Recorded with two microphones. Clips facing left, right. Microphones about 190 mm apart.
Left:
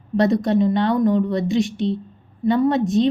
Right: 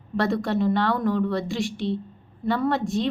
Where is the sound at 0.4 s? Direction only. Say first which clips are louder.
Left 5 dB; 15° left (ahead or behind).